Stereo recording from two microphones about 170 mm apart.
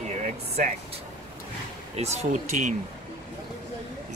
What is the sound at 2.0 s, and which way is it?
Speech, 40° right (ahead or behind).